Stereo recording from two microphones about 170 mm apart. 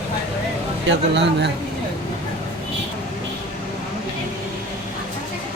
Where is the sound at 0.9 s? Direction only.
90° right.